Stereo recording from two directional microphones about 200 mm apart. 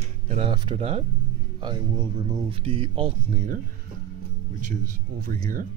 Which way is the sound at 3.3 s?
40° right (ahead or behind).